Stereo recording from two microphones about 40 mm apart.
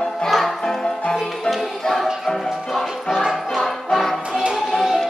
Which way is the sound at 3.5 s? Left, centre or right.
Centre.